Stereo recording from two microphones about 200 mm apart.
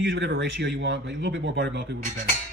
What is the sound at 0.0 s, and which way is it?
Speech, 65° right (ahead or behind).